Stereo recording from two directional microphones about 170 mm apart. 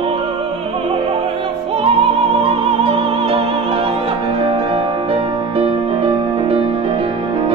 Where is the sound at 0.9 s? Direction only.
30° right (ahead or behind).